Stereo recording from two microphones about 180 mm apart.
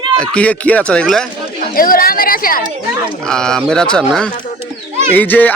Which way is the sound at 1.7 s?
55° left (ahead or behind).